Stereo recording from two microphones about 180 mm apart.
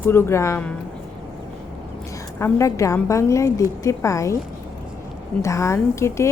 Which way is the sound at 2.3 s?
15° left (ahead or behind).